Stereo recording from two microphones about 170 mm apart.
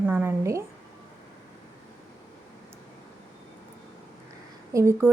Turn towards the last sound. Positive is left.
turn(degrees=-15)  # may be behind; listen again after turning